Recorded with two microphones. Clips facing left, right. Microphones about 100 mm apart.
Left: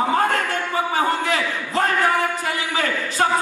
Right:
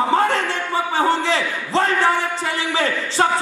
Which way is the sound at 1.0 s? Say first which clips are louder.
Right 4 dB; 30° right (ahead or behind).